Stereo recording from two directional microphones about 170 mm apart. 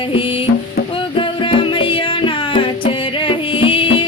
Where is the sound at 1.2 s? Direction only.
30° left (ahead or behind).